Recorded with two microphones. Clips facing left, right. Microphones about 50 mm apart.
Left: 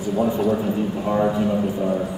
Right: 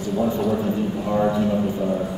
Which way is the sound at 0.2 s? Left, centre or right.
Centre.